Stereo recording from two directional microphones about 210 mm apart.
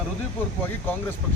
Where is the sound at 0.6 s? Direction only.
10° left (ahead or behind).